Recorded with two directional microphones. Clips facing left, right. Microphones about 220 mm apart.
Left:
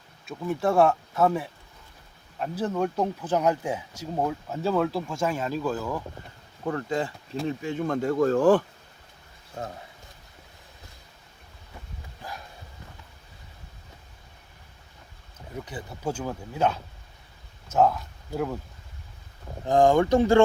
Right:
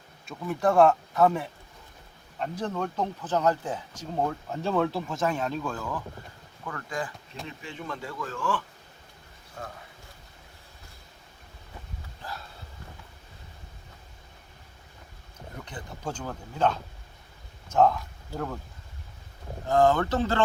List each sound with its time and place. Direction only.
0.3 s speech: centre (ahead or behind)
6.7 s speech: 25° left (ahead or behind)
7.4 s speech: 45° left (ahead or behind)
9.6 s speech: 25° left (ahead or behind)
12.2 s a sound: 15° left (ahead or behind)
15.6 s speech: 10° left (ahead or behind)
19.6 s speech: 15° left (ahead or behind)